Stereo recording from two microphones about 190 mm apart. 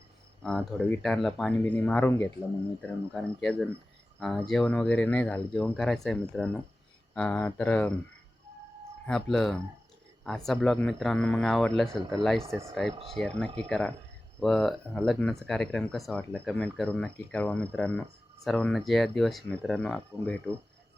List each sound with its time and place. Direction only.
0.4 s speech: 5° left (ahead or behind)
9.0 s speech: 5° left (ahead or behind)
12.9 s speech: 30° right (ahead or behind)
13.1 s speech: 5° left (ahead or behind)